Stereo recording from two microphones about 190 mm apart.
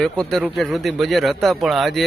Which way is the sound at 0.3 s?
Centre (ahead or behind).